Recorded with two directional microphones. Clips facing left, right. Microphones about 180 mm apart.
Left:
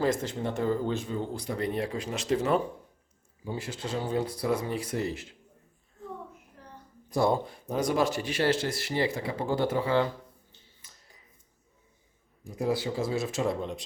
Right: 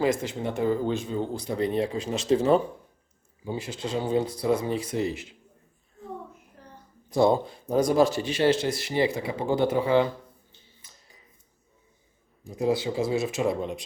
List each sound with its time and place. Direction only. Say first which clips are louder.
0.0 s speech: right 2 dB; 15° right (ahead or behind)
7.2 s speech: right 4 dB; 25° right (ahead or behind)
7.8 s speech: right 5 dB; 35° right (ahead or behind); by 10.1 s 15° right (ahead or behind)
12.5 s speech: right 3 dB; 20° right (ahead or behind)